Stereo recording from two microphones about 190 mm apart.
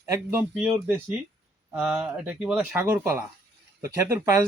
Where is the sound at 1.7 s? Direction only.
5° right (ahead or behind).